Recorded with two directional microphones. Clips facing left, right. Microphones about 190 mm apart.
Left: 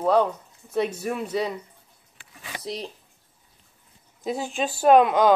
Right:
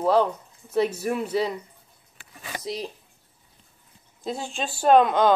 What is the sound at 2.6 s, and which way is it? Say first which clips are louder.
Speech: right 1 dB; centre (ahead or behind).